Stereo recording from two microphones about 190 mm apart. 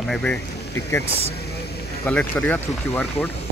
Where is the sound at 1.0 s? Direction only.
30° right (ahead or behind).